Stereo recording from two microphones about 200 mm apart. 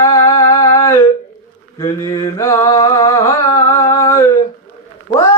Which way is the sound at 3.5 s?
15° left (ahead or behind).